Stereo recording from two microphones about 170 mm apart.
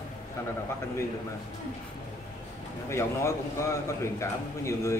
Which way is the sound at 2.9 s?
15° left (ahead or behind).